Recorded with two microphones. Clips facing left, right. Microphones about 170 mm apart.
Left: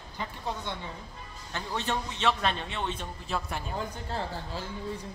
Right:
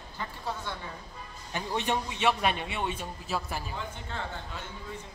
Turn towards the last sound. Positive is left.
turn(degrees=35)  # may be behind; listen again after turning